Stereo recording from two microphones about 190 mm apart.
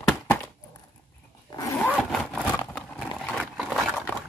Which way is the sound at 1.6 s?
15° left (ahead or behind).